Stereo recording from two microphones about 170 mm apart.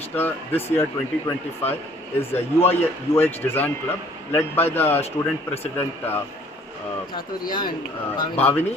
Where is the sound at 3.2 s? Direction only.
15° left (ahead or behind).